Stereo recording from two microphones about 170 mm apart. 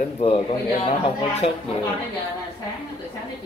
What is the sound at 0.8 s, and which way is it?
Speech, 35° left (ahead or behind).